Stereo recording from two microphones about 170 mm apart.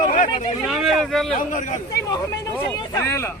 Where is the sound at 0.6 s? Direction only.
Centre (ahead or behind).